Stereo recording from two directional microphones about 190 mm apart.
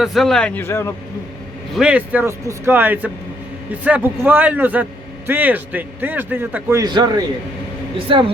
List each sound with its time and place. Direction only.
0.0 s a man's voice: centre (ahead or behind)
1.7 s a man's voice: 5° right (ahead or behind); by 8.2 s 25° right (ahead or behind)